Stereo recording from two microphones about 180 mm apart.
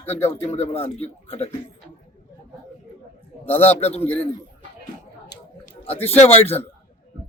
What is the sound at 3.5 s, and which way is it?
Speech, 10° left (ahead or behind).